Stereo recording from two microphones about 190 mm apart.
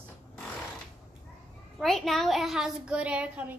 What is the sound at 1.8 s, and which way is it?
A child's voice, centre (ahead or behind).